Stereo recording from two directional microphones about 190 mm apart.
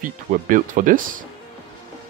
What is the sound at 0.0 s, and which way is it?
Speech, 45° right (ahead or behind).